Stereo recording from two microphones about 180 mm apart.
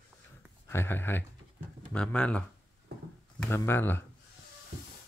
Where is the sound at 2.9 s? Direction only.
65° right (ahead or behind).